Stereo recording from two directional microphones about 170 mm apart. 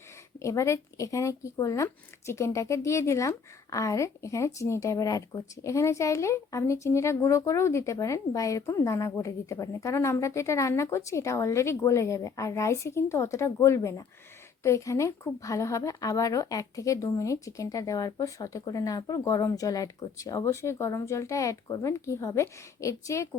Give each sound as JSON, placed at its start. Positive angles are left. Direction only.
{"t": 0.3, "sound": "speech", "side_deg": 15}